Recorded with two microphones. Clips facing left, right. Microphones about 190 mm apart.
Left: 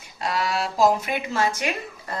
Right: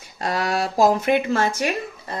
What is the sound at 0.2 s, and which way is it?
Speech, 45° right (ahead or behind).